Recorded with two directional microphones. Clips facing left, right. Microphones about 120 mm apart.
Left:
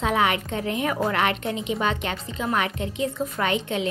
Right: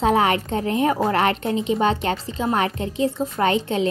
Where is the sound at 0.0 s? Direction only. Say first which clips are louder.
Right 4 dB; 40° right (ahead or behind).